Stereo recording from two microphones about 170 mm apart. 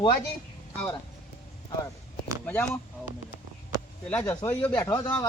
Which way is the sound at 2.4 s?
10° left (ahead or behind).